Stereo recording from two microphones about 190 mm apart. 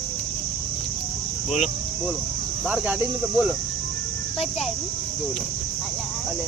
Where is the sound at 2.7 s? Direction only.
5° right (ahead or behind).